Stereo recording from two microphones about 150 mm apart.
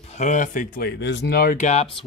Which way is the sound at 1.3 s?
80° left.